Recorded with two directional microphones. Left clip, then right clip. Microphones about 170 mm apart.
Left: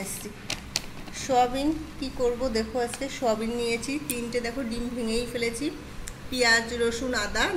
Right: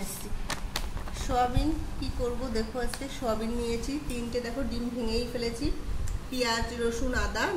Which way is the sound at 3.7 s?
25° left (ahead or behind).